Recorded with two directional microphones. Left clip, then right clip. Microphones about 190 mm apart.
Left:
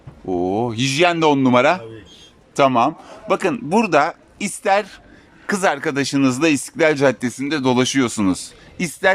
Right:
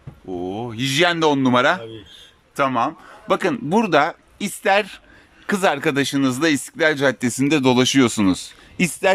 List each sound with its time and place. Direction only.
0.3 s speech: 20° left (ahead or behind)
0.9 s a man's voice: 5° left (ahead or behind)
3.3 s speech: 5° left (ahead or behind)
7.3 s speech: 10° right (ahead or behind)